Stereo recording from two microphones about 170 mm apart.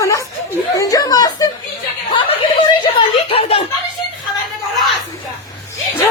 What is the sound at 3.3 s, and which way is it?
Speech, 35° left (ahead or behind).